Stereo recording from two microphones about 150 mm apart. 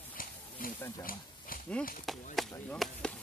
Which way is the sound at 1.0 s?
70° left (ahead or behind).